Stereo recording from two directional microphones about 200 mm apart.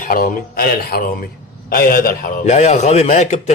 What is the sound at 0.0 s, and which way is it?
A man's voice, 45° left (ahead or behind).